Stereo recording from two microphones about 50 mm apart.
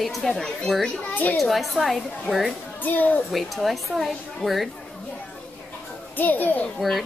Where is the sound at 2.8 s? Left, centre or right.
Left.